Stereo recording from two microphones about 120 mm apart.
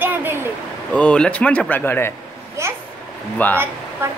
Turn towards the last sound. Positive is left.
turn(degrees=-20)  # may be behind; listen again after turning